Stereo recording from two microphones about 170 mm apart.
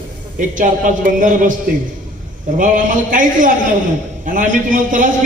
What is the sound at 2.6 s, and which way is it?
A man's voice, 50° right (ahead or behind).